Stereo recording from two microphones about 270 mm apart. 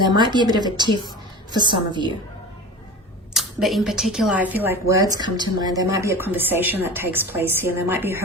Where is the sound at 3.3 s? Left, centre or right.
Centre.